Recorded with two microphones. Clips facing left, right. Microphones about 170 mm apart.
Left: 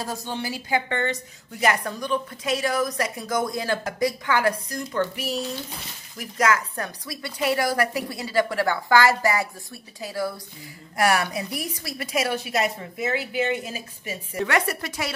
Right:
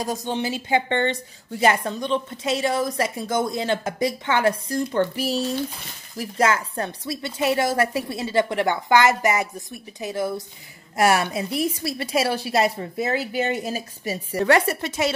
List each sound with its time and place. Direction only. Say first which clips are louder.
0.0 s a woman's voice: right 5 dB; 20° right (ahead or behind)